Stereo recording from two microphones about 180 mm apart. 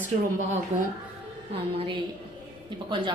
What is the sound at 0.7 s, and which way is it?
A woman's voice, 40° right (ahead or behind).